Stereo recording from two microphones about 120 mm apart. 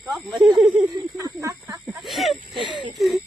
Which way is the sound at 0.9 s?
25° right (ahead or behind).